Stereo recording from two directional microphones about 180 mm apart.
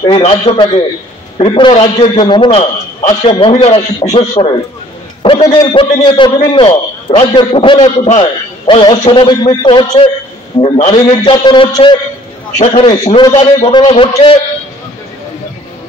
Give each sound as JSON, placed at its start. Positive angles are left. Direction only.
{"t": 0.0, "sound": "a man's voice", "side_deg": 30}